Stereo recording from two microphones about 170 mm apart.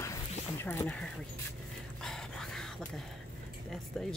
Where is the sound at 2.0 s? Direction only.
Centre (ahead or behind).